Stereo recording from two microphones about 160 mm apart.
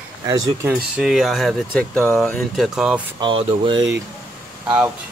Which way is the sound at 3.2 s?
30° right (ahead or behind).